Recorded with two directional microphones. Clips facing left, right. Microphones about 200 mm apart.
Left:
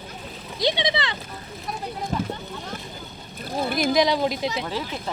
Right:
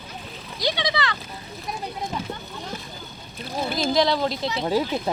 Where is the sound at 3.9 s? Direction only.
15° left (ahead or behind).